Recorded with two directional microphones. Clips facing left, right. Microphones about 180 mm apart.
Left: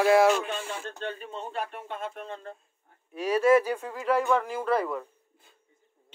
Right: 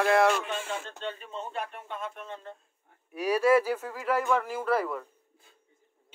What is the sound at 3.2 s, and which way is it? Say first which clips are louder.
Speech: left 2 dB; 10° right (ahead or behind).